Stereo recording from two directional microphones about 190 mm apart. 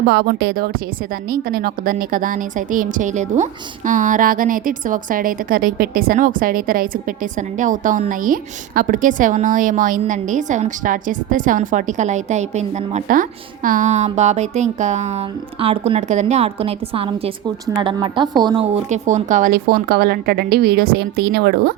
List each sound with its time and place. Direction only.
0.1 s a woman's voice: 60° right (ahead or behind)